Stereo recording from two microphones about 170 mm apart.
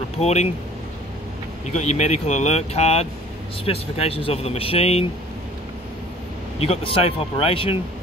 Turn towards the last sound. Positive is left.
turn(degrees=30)  # may be behind; listen again after turning